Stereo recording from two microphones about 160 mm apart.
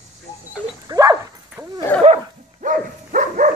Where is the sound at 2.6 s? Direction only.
55° right (ahead or behind).